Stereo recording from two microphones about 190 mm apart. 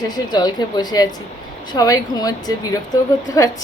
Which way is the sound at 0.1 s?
20° left (ahead or behind).